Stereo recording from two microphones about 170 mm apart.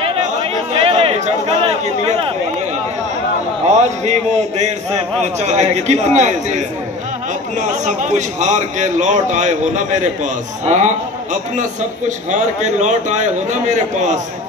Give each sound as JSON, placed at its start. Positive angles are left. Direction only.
{"t": 0.0, "sound": "chatter", "side_deg": -35}
{"t": 3.6, "sound": "a man's voice", "side_deg": -45}
{"t": 12.3, "sound": "a man's voice", "side_deg": -45}